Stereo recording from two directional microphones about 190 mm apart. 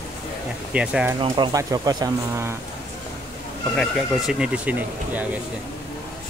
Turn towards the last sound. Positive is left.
turn(degrees=-10)  # may be behind; listen again after turning